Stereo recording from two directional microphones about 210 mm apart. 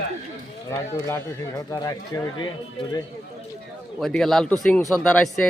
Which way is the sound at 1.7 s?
15° left (ahead or behind).